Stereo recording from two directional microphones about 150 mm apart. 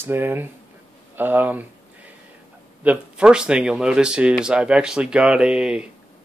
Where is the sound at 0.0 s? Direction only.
15° right (ahead or behind).